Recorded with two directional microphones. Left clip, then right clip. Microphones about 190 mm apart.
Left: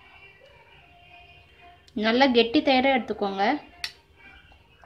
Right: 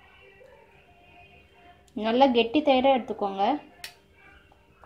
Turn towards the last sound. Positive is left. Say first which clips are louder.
# left 1 dB
turn(degrees=5)  # may be behind; listen again after turning